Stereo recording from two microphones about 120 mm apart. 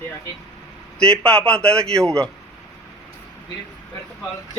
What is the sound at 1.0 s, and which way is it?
A man's voice, 10° left (ahead or behind).